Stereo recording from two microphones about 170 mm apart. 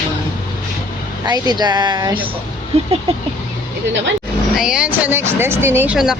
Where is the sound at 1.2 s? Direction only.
25° right (ahead or behind).